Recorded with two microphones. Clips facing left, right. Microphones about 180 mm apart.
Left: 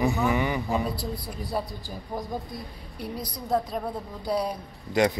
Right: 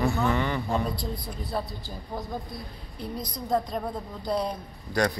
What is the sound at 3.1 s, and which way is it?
A man's voice, 5° left (ahead or behind).